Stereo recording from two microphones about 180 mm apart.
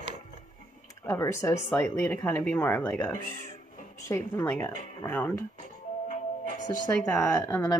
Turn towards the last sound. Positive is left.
turn(degrees=15)  # may be behind; listen again after turning